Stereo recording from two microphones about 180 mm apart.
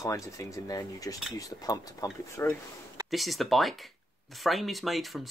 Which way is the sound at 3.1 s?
Centre (ahead or behind).